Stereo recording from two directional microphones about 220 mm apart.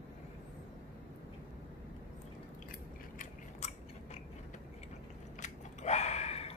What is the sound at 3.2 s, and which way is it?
Gears, 30° left (ahead or behind).